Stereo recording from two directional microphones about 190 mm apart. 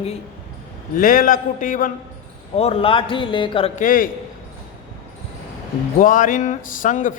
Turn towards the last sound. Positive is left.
turn(degrees=45)  # may be behind; listen again after turning